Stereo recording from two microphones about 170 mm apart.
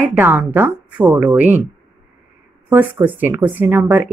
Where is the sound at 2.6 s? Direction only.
15° right (ahead or behind).